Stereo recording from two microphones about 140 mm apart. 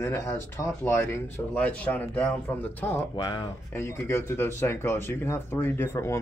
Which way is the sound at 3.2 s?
35° left (ahead or behind).